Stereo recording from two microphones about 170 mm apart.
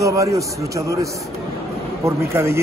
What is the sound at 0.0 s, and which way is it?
Speech, 20° right (ahead or behind).